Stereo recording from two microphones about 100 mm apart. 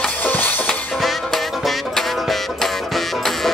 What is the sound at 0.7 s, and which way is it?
Music, centre (ahead or behind).